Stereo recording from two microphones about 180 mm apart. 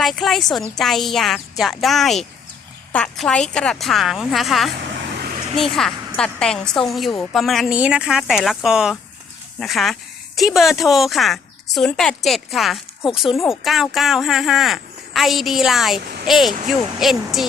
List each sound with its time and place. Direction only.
0.0 s a woman's voice: centre (ahead or behind)
5.1 s vehicle: 55° right (ahead or behind)
5.7 s a woman's voice: centre (ahead or behind)